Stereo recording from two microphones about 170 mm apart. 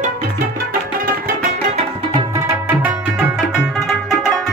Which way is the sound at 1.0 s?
55° right (ahead or behind).